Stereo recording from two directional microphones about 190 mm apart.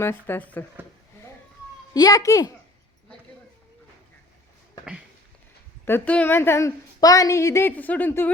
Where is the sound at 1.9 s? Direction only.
20° left (ahead or behind).